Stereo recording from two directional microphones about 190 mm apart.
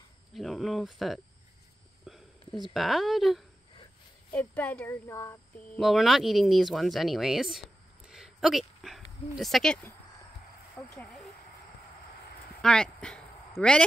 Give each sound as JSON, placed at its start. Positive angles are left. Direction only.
{"t": 0.3, "sound": "speech", "side_deg": 0}
{"t": 2.1, "sound": "a sound", "side_deg": -5}
{"t": 2.7, "sound": "speech", "side_deg": 0}
{"t": 5.8, "sound": "speech", "side_deg": 0}
{"t": 10.8, "sound": "speech", "side_deg": 5}
{"t": 12.6, "sound": "speech", "side_deg": 5}